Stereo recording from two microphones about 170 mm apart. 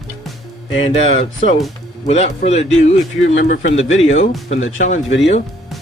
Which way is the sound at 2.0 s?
40° left (ahead or behind).